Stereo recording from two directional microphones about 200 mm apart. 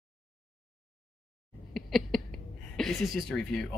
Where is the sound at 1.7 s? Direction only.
Centre (ahead or behind).